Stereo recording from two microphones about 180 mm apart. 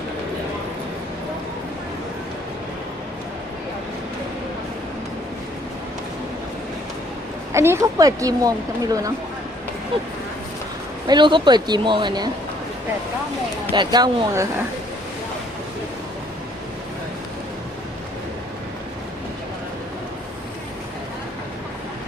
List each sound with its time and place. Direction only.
7.5 s speech: 15° right (ahead or behind)
11.0 s speech: 25° right (ahead or behind)
13.7 s speech: 25° right (ahead or behind)